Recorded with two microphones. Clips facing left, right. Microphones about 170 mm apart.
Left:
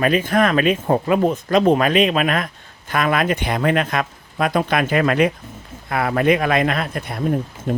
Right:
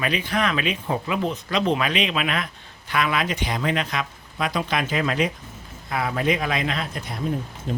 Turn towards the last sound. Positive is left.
turn(degrees=55)  # may be behind; listen again after turning